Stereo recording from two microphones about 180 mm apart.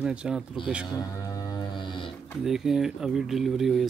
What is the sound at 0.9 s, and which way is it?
Music, 20° left (ahead or behind).